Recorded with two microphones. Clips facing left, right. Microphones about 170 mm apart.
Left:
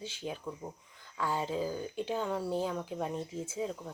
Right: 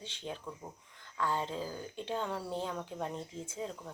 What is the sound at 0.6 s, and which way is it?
Speech, 20° left (ahead or behind).